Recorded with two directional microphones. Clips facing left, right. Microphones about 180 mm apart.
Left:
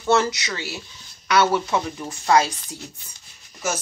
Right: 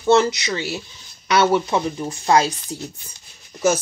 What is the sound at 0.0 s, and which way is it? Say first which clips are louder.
Speech: right 4 dB; 20° right (ahead or behind).